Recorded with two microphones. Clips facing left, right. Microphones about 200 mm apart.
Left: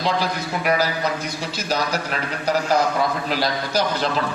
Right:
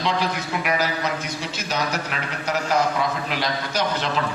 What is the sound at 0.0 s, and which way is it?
A man's voice, 35° left (ahead or behind).